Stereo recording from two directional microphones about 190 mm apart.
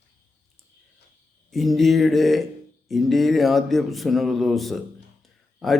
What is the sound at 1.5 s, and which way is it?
A man's voice, centre (ahead or behind).